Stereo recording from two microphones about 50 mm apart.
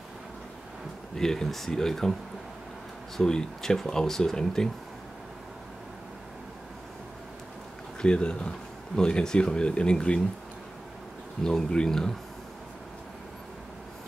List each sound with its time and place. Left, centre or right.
1.1 s speech: centre
3.2 s speech: centre
8.0 s speech: centre
11.4 s speech: centre